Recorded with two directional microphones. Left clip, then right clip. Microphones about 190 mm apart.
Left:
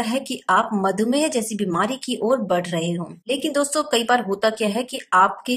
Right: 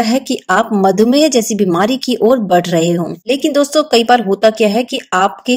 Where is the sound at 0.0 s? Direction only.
20° right (ahead or behind).